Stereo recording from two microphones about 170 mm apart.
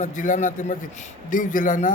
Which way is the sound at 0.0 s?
45° left (ahead or behind).